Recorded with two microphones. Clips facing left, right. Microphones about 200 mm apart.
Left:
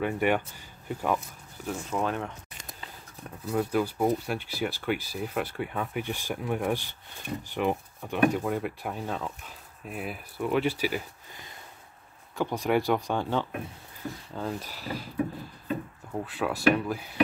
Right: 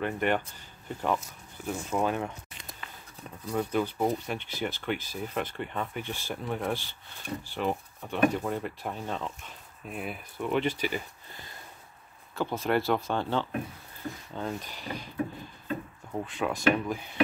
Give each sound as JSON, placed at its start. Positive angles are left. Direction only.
{"t": 0.0, "sound": "speech", "side_deg": 10}
{"t": 1.7, "sound": "speech", "side_deg": -5}
{"t": 12.4, "sound": "speech", "side_deg": 15}
{"t": 16.1, "sound": "speech", "side_deg": 5}